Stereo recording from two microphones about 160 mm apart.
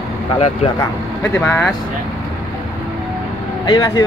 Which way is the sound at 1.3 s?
5° left (ahead or behind).